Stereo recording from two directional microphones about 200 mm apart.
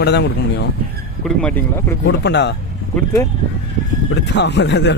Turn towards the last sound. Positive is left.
turn(degrees=60)  # may be behind; listen again after turning